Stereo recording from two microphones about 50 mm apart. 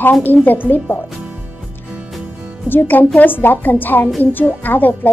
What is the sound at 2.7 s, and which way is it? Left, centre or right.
Speech, left.